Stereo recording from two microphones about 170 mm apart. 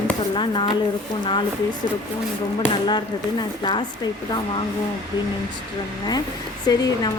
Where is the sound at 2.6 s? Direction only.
25° left (ahead or behind).